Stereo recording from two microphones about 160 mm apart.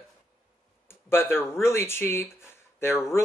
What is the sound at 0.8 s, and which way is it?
Speech, 15° left (ahead or behind).